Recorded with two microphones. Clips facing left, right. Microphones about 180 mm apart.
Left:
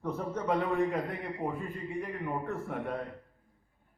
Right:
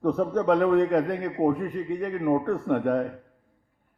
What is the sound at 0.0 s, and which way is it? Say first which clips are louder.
A man's voice: right 11 dB; 65° right (ahead or behind).